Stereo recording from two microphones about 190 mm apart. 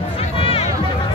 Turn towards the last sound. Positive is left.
turn(degrees=30)  # may be behind; listen again after turning